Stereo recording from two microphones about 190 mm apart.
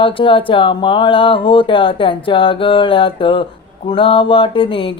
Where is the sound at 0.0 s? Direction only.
25° left (ahead or behind).